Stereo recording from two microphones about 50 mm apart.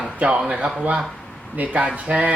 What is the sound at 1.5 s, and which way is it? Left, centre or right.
Speech, right.